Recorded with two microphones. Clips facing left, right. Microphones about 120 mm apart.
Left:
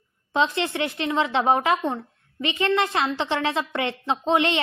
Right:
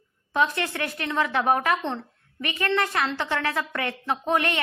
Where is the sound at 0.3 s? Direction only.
20° left (ahead or behind).